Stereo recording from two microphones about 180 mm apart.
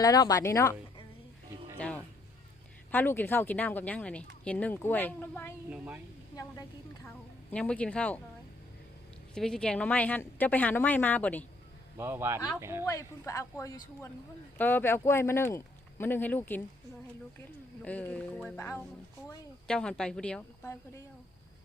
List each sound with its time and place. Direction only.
0.0 s speech: 20° left (ahead or behind)
2.9 s speech: 10° left (ahead or behind)
5.7 s speech: 5° right (ahead or behind)
6.3 s a woman's voice: 20° left (ahead or behind)
7.5 s speech: 5° left (ahead or behind)
9.3 s speech: 5° left (ahead or behind)
11.9 s speech: 15° right (ahead or behind)
12.8 s speech: 15° left (ahead or behind)
17.8 s a woman's voice: 10° left (ahead or behind)